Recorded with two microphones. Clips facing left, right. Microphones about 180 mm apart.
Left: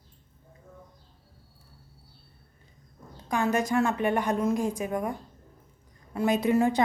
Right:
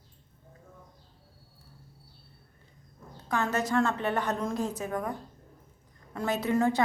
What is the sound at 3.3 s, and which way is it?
A woman's voice, 15° left (ahead or behind).